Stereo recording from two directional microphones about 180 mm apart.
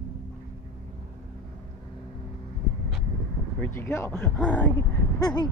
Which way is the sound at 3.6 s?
15° left (ahead or behind).